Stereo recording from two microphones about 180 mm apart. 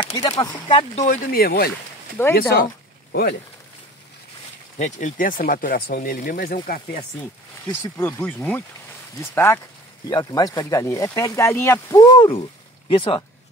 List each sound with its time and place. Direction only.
0.4 s speech: 25° left (ahead or behind); by 1.7 s 60° left (ahead or behind)
2.2 s speech: 15° left (ahead or behind)
2.5 s a sound: 55° left (ahead or behind)
4.7 s speech: 40° left (ahead or behind)
7.8 s speech: 10° left (ahead or behind); by 13.2 s 30° left (ahead or behind)